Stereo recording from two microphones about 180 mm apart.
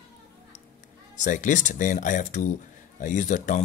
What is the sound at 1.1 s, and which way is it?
Speech, 45° left (ahead or behind).